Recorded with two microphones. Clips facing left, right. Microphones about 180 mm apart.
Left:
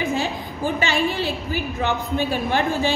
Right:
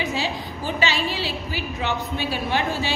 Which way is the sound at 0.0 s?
50° left (ahead or behind).